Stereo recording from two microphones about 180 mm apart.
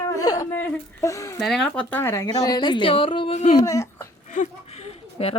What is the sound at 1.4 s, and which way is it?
A woman's voice, centre (ahead or behind).